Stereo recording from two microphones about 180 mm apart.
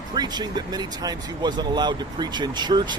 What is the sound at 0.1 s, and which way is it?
Speech, 20° right (ahead or behind).